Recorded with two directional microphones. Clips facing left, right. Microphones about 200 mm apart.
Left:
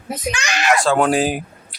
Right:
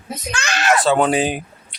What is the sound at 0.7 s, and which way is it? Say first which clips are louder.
Speech: even; centre (ahead or behind).